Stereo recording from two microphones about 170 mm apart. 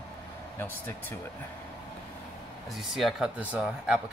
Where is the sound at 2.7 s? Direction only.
Centre (ahead or behind).